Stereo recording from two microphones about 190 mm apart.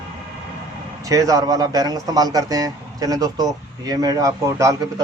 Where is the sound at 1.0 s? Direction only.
20° right (ahead or behind).